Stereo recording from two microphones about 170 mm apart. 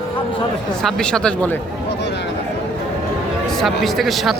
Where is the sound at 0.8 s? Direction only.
5° left (ahead or behind).